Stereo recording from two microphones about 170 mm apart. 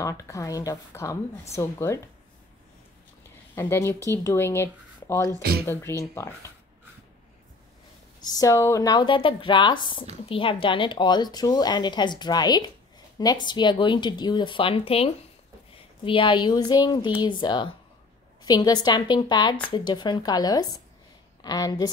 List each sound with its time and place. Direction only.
0.0 s speech: 20° left (ahead or behind)
3.5 s speech: 15° left (ahead or behind)
8.2 s speech: 20° left (ahead or behind)